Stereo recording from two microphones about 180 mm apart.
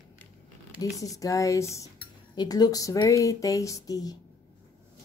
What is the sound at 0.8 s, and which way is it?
Speech, 20° left (ahead or behind).